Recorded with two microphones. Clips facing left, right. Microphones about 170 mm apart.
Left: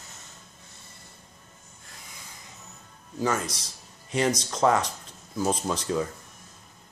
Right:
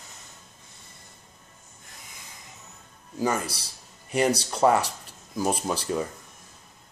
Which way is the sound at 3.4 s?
30° right (ahead or behind).